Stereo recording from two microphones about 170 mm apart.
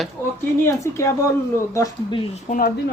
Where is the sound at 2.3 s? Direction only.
55° left (ahead or behind).